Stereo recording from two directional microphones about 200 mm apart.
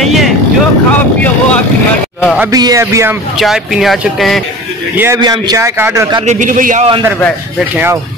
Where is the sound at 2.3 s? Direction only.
20° right (ahead or behind); by 4.4 s centre (ahead or behind).